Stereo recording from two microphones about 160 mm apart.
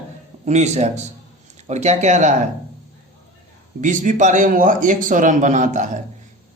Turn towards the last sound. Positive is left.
turn(degrees=-50)  # may be behind; listen again after turning